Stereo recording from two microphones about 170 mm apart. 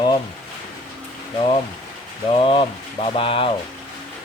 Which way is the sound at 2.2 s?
30° left (ahead or behind).